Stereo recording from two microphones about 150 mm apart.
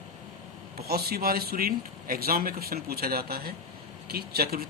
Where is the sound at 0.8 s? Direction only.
90° right.